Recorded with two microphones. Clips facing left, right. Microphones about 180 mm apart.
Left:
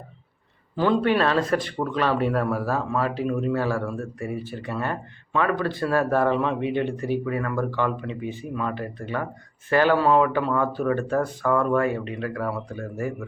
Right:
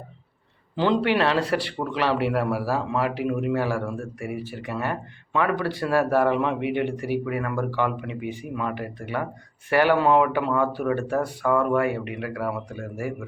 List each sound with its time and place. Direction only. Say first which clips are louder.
0.8 s speech: left 1 dB; 20° right (ahead or behind)